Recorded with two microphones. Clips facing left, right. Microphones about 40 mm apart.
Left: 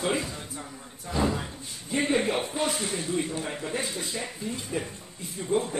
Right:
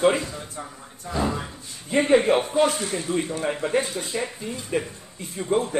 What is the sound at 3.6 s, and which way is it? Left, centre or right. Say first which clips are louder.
A man's voice: right 7 dB; right.